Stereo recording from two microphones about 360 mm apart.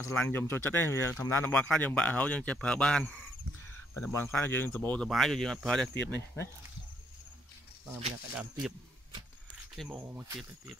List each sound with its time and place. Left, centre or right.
0.0 s speech: centre
7.9 s speech: centre
9.8 s speech: centre